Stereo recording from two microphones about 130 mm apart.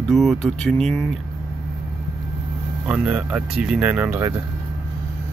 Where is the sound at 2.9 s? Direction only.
10° right (ahead or behind).